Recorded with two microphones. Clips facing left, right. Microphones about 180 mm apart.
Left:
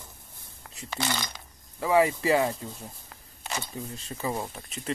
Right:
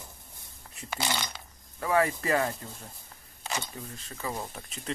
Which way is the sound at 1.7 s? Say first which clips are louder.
Left 4 dB; 15° left (ahead or behind).